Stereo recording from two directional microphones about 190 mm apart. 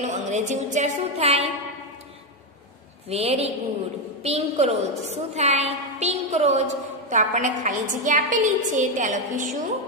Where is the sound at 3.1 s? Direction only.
30° right (ahead or behind).